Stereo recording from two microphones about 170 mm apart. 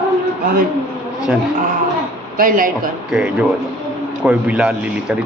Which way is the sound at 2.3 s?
55° right (ahead or behind).